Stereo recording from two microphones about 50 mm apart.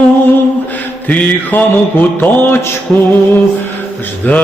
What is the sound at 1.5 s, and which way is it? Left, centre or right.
Music, left.